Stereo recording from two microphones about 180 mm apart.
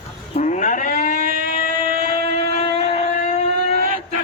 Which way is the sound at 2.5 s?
35° left (ahead or behind).